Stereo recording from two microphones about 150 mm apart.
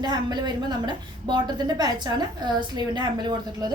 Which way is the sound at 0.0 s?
30° right (ahead or behind).